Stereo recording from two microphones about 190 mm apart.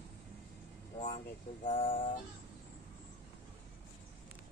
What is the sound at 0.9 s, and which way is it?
Vehicle, 30° left (ahead or behind).